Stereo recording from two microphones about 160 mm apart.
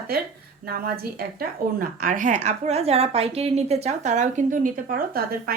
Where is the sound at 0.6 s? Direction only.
70° right (ahead or behind); by 2.4 s 55° right (ahead or behind).